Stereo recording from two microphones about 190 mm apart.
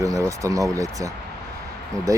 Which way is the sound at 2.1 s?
15° right (ahead or behind).